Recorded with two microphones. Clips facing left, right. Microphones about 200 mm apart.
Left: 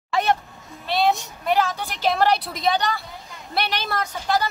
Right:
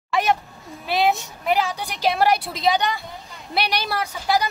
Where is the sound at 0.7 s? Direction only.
Centre (ahead or behind).